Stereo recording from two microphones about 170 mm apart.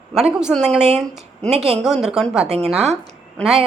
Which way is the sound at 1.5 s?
40° right (ahead or behind).